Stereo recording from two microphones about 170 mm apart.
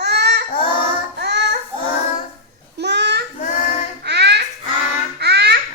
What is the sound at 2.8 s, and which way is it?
Babbling, 90° right.